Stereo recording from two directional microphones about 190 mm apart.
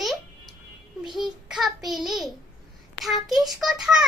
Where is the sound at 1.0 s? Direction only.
Centre (ahead or behind).